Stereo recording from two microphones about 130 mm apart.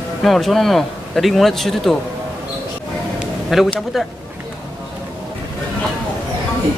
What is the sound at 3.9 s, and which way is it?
Speech, centre (ahead or behind).